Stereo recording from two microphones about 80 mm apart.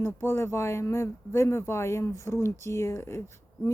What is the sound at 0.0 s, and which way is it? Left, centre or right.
Speech, left.